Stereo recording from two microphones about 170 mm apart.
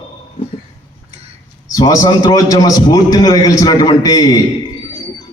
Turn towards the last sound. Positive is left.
turn(degrees=20)  # may be behind; listen again after turning